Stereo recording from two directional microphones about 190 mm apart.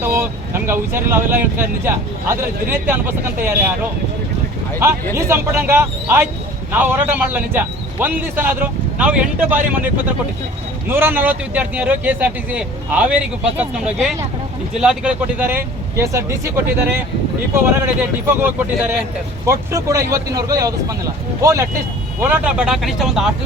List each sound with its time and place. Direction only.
0.0 s speech: 15° right (ahead or behind)
5.1 s speech: 10° right (ahead or behind)